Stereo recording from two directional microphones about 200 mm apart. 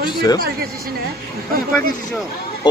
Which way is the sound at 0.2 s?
20° left (ahead or behind).